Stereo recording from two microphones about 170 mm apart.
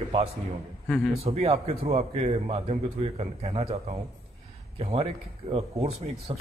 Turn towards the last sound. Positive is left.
turn(degrees=-35)  # may be behind; listen again after turning